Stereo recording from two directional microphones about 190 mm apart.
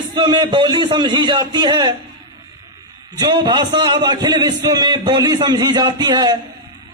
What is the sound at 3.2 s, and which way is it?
A man's voice, 20° right (ahead or behind).